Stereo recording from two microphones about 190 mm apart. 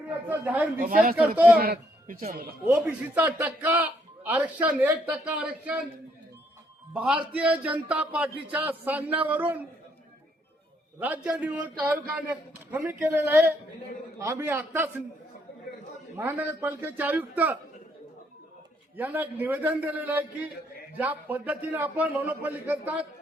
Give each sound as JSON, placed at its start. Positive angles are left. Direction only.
{"t": 0.3, "sound": "speech", "side_deg": -10}
{"t": 0.8, "sound": "speech", "side_deg": -45}
{"t": 2.6, "sound": "speech", "side_deg": -10}
{"t": 6.9, "sound": "speech", "side_deg": -5}
{"t": 11.0, "sound": "speech", "side_deg": -5}
{"t": 12.7, "sound": "speech", "side_deg": -10}
{"t": 16.1, "sound": "speech", "side_deg": -10}
{"t": 18.9, "sound": "speech", "side_deg": -10}